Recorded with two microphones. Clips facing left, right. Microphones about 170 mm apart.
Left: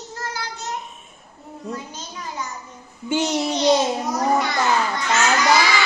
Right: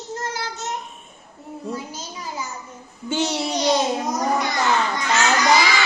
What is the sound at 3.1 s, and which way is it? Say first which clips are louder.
Babbling: left 1 dB; 15° left (ahead or behind).